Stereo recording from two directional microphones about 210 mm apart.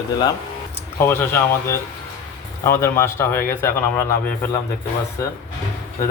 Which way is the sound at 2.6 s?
10° left (ahead or behind).